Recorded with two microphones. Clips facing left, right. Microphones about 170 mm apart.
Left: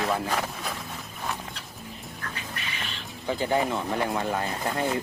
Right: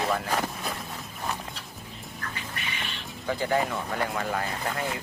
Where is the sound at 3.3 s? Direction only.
20° left (ahead or behind).